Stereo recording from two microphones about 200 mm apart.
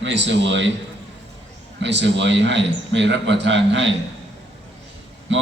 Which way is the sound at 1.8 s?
60° right (ahead or behind).